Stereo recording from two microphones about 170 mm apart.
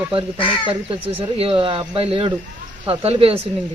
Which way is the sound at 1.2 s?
30° right (ahead or behind).